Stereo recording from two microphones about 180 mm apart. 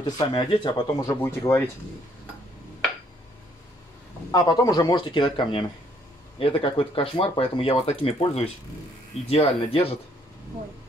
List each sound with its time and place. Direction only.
0.0 s speech: 25° left (ahead or behind)
4.3 s speech: 20° left (ahead or behind)